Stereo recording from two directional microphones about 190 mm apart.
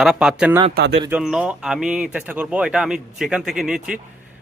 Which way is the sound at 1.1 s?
5° right (ahead or behind).